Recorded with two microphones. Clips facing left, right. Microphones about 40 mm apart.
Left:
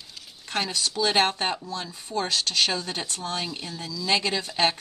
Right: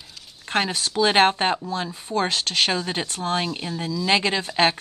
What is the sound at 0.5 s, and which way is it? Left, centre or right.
Speech, right.